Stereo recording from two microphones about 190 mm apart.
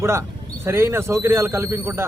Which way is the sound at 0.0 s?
15° right (ahead or behind).